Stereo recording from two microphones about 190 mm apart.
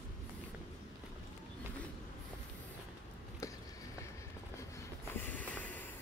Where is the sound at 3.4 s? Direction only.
15° left (ahead or behind).